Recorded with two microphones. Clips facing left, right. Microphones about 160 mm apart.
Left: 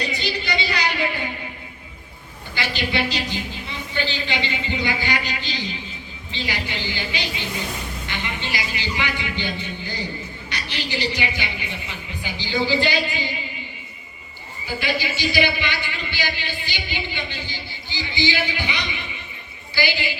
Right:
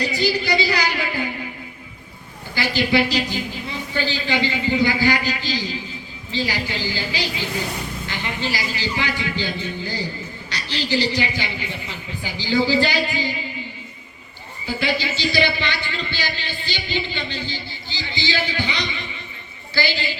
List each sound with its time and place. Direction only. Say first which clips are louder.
0.0 s music: right 5 dB; 20° left (ahead or behind)
2.6 s a man's voice: right 5 dB; 20° left (ahead or behind)
14.8 s a man's voice: right 1 dB; 15° left (ahead or behind)